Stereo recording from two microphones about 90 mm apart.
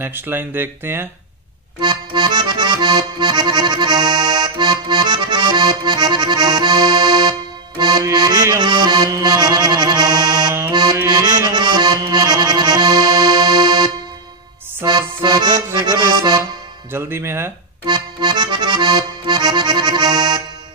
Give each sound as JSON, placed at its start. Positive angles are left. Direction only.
{"t": 0.0, "sound": "speech", "side_deg": -25}
{"t": 1.8, "sound": "accordion", "side_deg": -55}
{"t": 10.7, "sound": "music", "side_deg": -55}
{"t": 11.2, "sound": "accordion", "side_deg": -40}
{"t": 11.5, "sound": "accordion", "side_deg": -55}
{"t": 15.2, "sound": "accordion", "side_deg": -50}
{"t": 16.9, "sound": "speech", "side_deg": -30}
{"t": 17.8, "sound": "accordion", "side_deg": -55}